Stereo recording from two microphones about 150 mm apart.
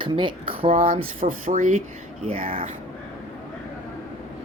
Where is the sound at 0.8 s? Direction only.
65° right (ahead or behind).